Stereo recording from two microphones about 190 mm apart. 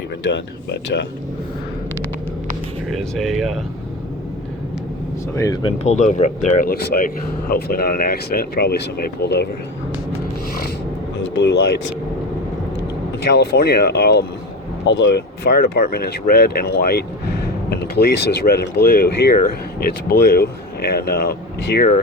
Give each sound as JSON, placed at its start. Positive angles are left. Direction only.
{"t": 0.3, "sound": "speech", "side_deg": 65}
{"t": 3.0, "sound": "speech", "side_deg": 0}
{"t": 5.3, "sound": "speech", "side_deg": 20}
{"t": 6.0, "sound": "speech", "side_deg": 40}
{"t": 11.3, "sound": "speech", "side_deg": 65}
{"t": 13.3, "sound": "speech", "side_deg": 60}
{"t": 14.8, "sound": "speech", "side_deg": 70}